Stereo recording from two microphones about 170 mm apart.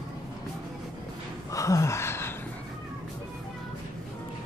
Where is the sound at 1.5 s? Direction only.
20° left (ahead or behind).